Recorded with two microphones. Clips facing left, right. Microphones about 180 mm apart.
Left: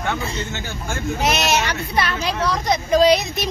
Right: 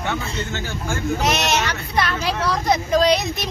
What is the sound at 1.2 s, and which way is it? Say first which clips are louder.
Speech: left 3 dB; 5° left (ahead or behind).